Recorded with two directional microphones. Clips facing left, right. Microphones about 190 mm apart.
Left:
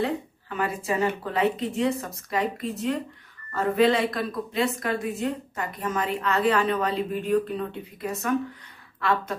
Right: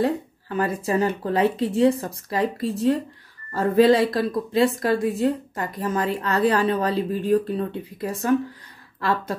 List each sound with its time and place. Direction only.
0.0 s a woman's voice: 40° right (ahead or behind)